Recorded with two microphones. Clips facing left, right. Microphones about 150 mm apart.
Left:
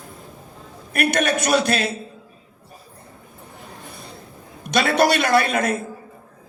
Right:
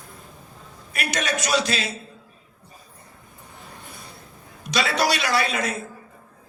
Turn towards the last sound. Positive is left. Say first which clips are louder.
# left 5 dB
turn(degrees=55)  # may be behind; listen again after turning